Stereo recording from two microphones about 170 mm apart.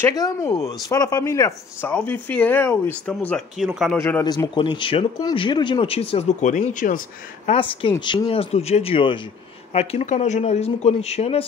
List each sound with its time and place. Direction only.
0.0 s speech: 20° left (ahead or behind); by 4.0 s centre (ahead or behind)
4.2 s speech: 25° left (ahead or behind); by 7.0 s 50° left (ahead or behind)
7.4 s speech: 35° left (ahead or behind)